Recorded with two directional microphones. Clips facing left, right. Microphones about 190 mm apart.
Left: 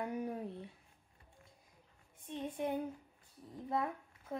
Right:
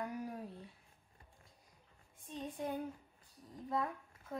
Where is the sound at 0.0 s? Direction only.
25° left (ahead or behind).